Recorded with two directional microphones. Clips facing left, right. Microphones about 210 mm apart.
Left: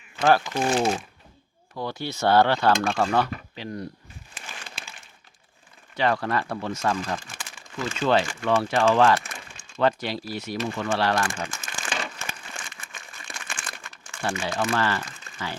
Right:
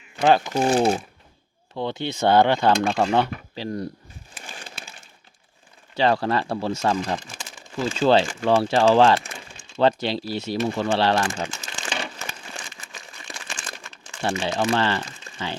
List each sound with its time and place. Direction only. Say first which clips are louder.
0.2 s speech: right 2 dB; 20° right (ahead or behind)
0.5 s speech: right 4 dB; 35° right (ahead or behind)
1.7 s speech: right 4 dB; 25° right (ahead or behind)
4.4 s a sound: right 2 dB; 30° right (ahead or behind)
6.0 s speech: right 3 dB; 30° right (ahead or behind)
7.0 s speech: right 3 dB; 20° right (ahead or behind)
7.8 s speech: right 4 dB; 30° right (ahead or behind)
13.1 s crumpling: right 1 dB; 20° right (ahead or behind)
14.2 s speech: right 3 dB; 25° right (ahead or behind)